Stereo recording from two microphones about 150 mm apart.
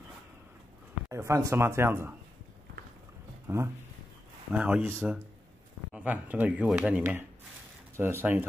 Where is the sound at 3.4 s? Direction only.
15° right (ahead or behind).